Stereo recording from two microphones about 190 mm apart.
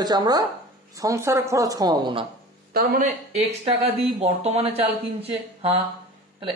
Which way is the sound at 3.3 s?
30° right (ahead or behind).